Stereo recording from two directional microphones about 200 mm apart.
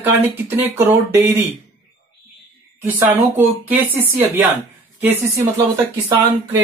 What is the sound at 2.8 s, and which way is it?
Speech, 10° right (ahead or behind).